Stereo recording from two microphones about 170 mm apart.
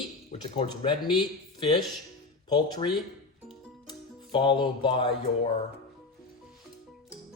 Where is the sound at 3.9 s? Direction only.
30° left (ahead or behind).